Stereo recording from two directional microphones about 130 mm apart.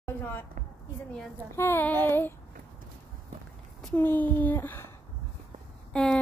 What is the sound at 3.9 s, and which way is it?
Speech, 15° left (ahead or behind).